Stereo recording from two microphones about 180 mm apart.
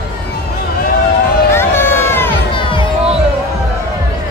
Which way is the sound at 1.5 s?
15° left (ahead or behind).